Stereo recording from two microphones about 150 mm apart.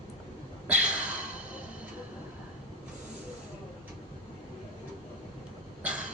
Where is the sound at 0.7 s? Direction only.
5° right (ahead or behind).